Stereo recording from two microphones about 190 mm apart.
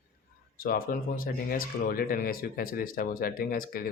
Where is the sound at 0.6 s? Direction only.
50° left (ahead or behind).